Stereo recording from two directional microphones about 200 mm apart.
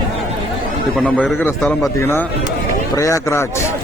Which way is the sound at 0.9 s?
5° left (ahead or behind).